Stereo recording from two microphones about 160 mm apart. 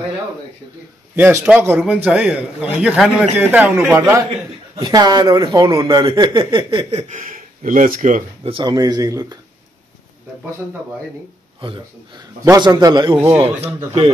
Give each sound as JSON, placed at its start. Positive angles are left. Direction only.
{"t": 1.1, "sound": "a man's voice", "side_deg": -10}
{"t": 4.7, "sound": "speech", "side_deg": -25}
{"t": 6.8, "sound": "a sound", "side_deg": -35}
{"t": 7.1, "sound": "speech", "side_deg": -55}
{"t": 8.5, "sound": "speech", "side_deg": -30}
{"t": 12.4, "sound": "speech", "side_deg": -25}